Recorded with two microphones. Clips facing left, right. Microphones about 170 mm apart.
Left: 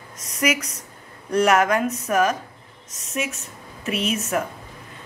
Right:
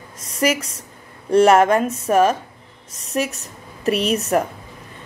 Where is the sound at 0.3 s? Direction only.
30° right (ahead or behind).